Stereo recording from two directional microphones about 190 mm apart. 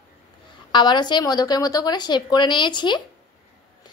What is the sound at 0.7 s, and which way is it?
A woman's voice, 25° left (ahead or behind).